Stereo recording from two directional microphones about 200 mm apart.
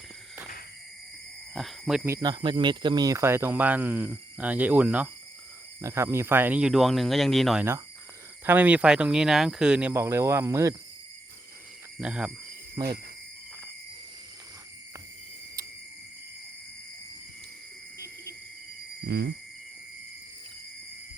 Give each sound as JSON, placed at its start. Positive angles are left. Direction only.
{"t": 1.5, "sound": "speech", "side_deg": 0}
{"t": 2.0, "sound": "speech", "side_deg": -20}
{"t": 11.9, "sound": "speech", "side_deg": -5}
{"t": 12.7, "sound": "cricket", "side_deg": -15}
{"t": 19.0, "sound": "a sound", "side_deg": -55}